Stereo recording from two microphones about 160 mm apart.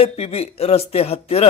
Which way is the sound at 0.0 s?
40° left (ahead or behind).